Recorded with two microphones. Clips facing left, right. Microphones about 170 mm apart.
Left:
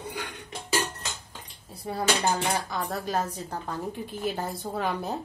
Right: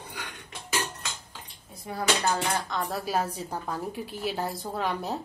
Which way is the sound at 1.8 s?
30° left (ahead or behind).